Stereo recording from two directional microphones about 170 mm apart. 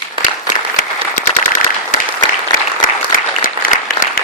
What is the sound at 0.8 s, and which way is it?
Applause, 50° left (ahead or behind).